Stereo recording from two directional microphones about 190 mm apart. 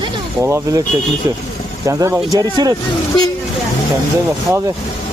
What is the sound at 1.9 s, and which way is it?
Speech, 15° right (ahead or behind).